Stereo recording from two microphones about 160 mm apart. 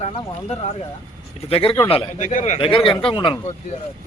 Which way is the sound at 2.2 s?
50° left (ahead or behind).